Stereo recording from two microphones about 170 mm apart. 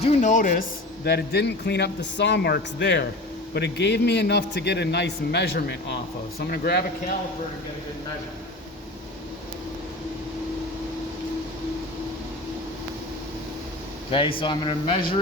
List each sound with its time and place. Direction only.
0.0 s a man's voice: 45° left (ahead or behind)
1.0 s a man's voice: 75° left (ahead or behind)
14.1 s speech: 30° left (ahead or behind)